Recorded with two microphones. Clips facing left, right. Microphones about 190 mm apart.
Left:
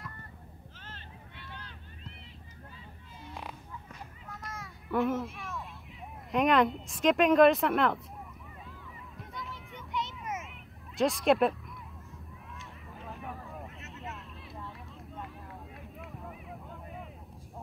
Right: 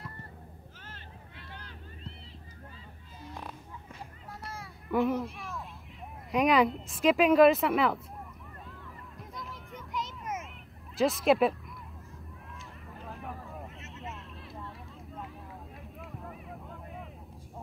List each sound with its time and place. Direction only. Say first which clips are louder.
4.3 s a sound: even; 30° right (ahead or behind)
4.8 s a sound: right 1 dB; centre (ahead or behind)
6.3 s speech: right 1 dB; centre (ahead or behind)
9.1 s music: left 1 dB; centre (ahead or behind)
11.0 s speech: right 1 dB; centre (ahead or behind)
12.5 s vehicle: even; centre (ahead or behind)
15.8 s vehicle: even; centre (ahead or behind)